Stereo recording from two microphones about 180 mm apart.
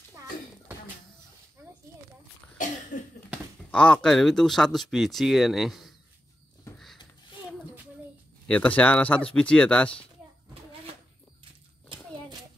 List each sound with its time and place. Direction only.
2.5 s cough: 50° left (ahead or behind)
3.7 s speech: 5° left (ahead or behind)
8.5 s speech: 5° left (ahead or behind)